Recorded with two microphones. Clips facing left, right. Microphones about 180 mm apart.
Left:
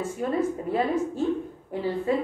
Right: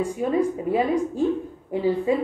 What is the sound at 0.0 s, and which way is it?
A woman's voice, 15° right (ahead or behind).